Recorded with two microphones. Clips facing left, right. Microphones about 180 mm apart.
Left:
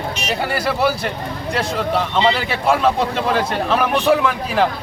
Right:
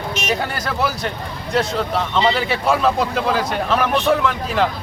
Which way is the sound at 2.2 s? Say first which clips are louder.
Even; centre (ahead or behind).